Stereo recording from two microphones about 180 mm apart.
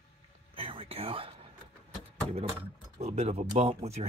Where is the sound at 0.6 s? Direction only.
30° right (ahead or behind).